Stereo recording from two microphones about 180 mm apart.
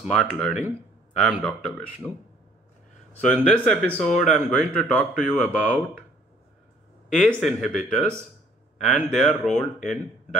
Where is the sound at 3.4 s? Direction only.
5° left (ahead or behind).